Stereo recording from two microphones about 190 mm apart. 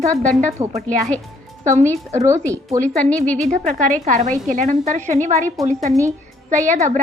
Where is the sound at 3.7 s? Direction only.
40° right (ahead or behind).